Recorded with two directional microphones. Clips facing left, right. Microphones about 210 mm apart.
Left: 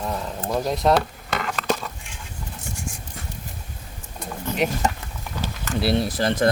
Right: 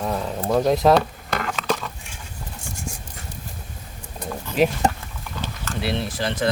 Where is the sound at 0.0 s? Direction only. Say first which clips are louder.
Right 3 dB; 5° right (ahead or behind).